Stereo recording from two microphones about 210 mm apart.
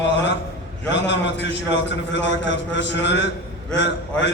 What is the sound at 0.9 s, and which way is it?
A man's voice, 60° left (ahead or behind).